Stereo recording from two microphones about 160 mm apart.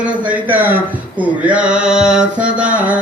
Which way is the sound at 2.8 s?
10° right (ahead or behind).